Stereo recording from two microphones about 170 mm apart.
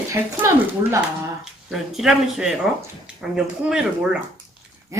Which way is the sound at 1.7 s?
Centre (ahead or behind).